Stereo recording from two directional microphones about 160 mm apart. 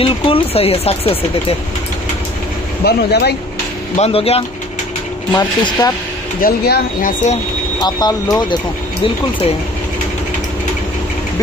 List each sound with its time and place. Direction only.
0.0 s speech: 35° left (ahead or behind)
2.8 s speech: 85° left
3.9 s speech: 35° left (ahead or behind)
5.3 s speech: 25° left (ahead or behind)
6.4 s speech: 70° left (ahead or behind)
7.8 s speech: 25° left (ahead or behind)